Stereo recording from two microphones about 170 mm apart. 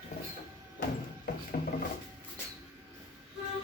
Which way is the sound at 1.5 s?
40° left (ahead or behind).